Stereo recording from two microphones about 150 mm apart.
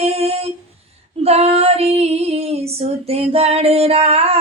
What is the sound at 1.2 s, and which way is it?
Female singing, 45° right (ahead or behind).